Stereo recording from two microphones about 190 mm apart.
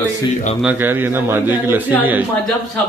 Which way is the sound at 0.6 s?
10° right (ahead or behind).